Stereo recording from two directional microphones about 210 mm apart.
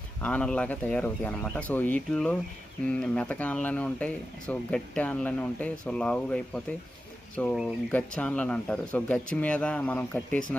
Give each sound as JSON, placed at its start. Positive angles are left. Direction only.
{"t": 0.2, "sound": "speech", "side_deg": 5}